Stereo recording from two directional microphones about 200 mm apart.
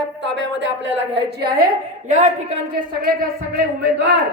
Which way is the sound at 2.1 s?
35° right (ahead or behind).